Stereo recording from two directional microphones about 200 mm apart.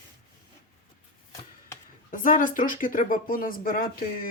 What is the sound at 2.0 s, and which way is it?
Speech, 40° left (ahead or behind).